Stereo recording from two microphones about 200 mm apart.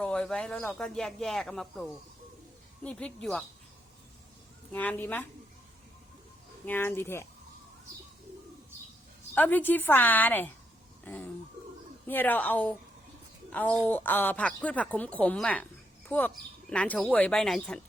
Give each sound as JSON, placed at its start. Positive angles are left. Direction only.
{"t": 0.0, "sound": "speech", "side_deg": 5}
{"t": 4.7, "sound": "a woman's voice", "side_deg": 10}
{"t": 6.7, "sound": "a woman's voice", "side_deg": 10}
{"t": 9.3, "sound": "a woman's voice", "side_deg": 10}